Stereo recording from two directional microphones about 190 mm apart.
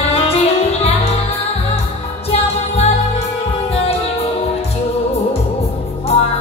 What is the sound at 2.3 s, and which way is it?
Music, 35° left (ahead or behind).